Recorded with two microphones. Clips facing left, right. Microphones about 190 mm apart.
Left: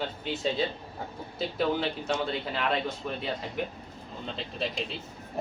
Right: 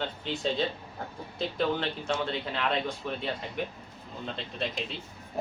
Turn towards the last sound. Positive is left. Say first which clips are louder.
# left 1 dB
turn(degrees=0)  # may be behind; listen again after turning